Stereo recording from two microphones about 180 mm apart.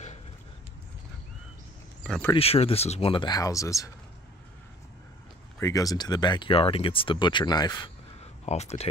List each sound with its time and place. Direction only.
2.3 s speech: 35° left (ahead or behind); by 3.9 s 20° left (ahead or behind)
5.6 s speech: 20° left (ahead or behind)
8.2 s a sound: 35° left (ahead or behind)